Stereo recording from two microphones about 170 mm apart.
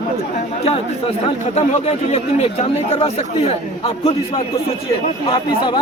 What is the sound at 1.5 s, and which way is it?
A man's voice, 40° left (ahead or behind).